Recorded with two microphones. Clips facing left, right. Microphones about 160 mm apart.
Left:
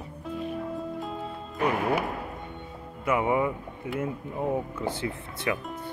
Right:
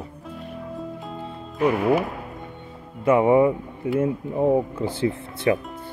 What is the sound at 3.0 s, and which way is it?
Speech, 30° right (ahead or behind).